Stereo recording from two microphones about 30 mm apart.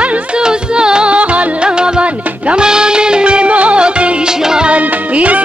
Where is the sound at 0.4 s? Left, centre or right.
Right.